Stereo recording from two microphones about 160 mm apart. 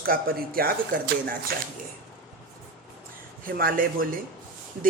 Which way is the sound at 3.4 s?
65° right (ahead or behind).